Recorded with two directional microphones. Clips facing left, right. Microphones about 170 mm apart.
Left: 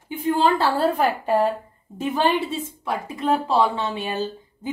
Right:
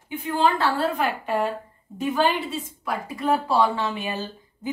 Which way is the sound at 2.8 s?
20° left (ahead or behind).